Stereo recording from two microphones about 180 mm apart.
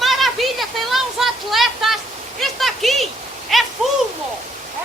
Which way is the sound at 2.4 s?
Centre (ahead or behind).